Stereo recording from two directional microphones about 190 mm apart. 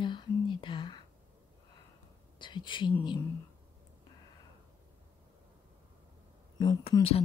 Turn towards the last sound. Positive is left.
turn(degrees=30)  # may be behind; listen again after turning